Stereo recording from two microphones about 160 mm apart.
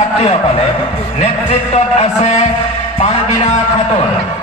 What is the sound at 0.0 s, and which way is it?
A man's voice, 40° left (ahead or behind).